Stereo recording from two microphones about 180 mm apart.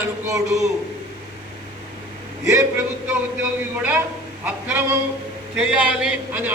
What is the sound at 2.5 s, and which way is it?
Speech, 20° right (ahead or behind).